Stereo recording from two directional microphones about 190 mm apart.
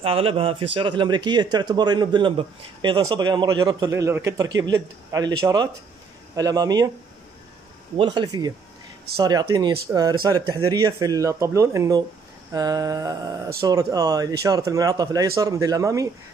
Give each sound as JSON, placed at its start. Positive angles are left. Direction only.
{"t": 0.0, "sound": "speech", "side_deg": -30}
{"t": 8.0, "sound": "speech", "side_deg": -25}